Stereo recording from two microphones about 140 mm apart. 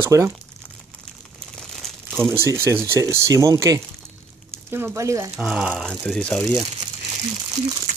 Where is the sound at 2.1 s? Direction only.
15° right (ahead or behind).